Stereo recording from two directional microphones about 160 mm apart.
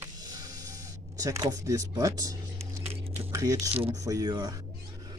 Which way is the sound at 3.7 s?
35° right (ahead or behind).